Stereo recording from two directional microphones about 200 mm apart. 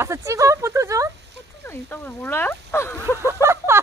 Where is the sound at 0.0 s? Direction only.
15° right (ahead or behind).